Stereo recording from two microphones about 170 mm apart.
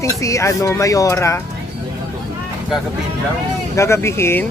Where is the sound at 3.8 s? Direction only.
15° left (ahead or behind).